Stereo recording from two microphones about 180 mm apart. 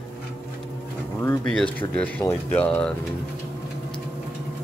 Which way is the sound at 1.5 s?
5° left (ahead or behind).